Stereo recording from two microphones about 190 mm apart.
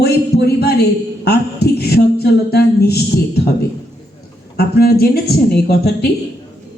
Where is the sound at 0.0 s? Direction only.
55° left (ahead or behind).